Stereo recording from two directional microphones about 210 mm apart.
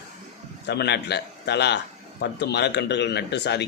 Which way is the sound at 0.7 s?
50° left (ahead or behind).